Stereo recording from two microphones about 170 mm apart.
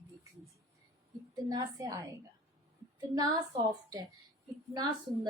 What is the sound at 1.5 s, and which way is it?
Speech, 20° right (ahead or behind).